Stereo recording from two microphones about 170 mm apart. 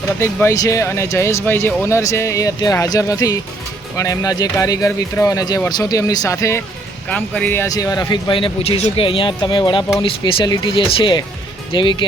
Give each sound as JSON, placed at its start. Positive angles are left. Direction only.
{"t": 0.2, "sound": "speech", "side_deg": 15}